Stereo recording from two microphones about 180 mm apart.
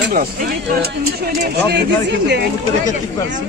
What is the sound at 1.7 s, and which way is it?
Speech, 65° right (ahead or behind).